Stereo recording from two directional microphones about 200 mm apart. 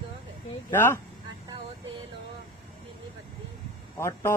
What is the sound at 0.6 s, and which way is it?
Speech, 10° left (ahead or behind).